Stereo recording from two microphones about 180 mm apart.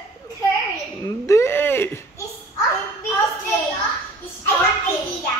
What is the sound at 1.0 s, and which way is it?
Whimper, 15° left (ahead or behind).